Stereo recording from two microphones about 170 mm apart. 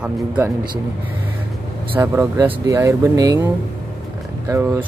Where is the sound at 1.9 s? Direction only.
15° right (ahead or behind).